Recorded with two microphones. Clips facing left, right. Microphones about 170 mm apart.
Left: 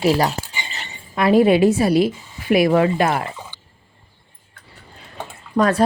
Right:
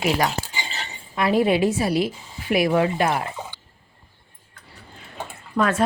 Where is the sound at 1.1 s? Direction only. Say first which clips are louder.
Left 5 dB; 60° left (ahead or behind).